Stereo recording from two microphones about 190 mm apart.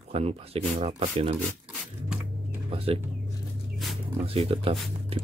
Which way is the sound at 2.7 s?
30° right (ahead or behind).